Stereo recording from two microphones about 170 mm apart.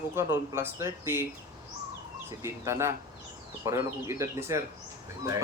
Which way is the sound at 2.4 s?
15° right (ahead or behind).